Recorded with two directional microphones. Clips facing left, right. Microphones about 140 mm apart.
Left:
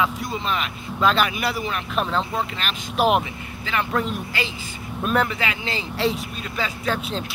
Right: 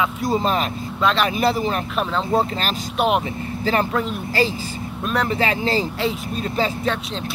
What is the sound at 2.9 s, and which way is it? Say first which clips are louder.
Speech: left 1 dB; centre (ahead or behind).